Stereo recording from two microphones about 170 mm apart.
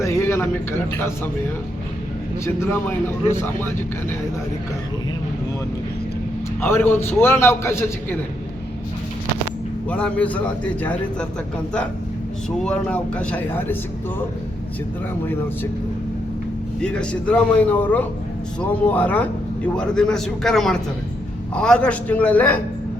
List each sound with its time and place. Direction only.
0.0 s a sound: 15° left (ahead or behind)
2.4 s a man's voice: 15° left (ahead or behind)
6.6 s a man's voice: 15° left (ahead or behind)
9.9 s a man's voice: 10° left (ahead or behind)
12.6 s a man's voice: 5° left (ahead or behind)
16.8 s a man's voice: 5° left (ahead or behind)